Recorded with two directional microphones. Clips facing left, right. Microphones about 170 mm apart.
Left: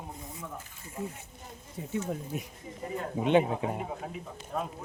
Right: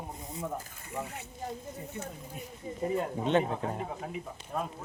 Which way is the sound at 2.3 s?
85° left.